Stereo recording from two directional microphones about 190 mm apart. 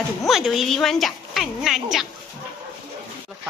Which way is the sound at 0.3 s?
Centre (ahead or behind).